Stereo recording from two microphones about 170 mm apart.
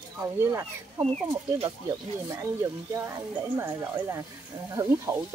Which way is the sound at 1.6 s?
15° right (ahead or behind).